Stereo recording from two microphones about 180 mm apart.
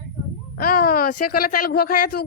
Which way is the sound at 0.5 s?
55° left (ahead or behind).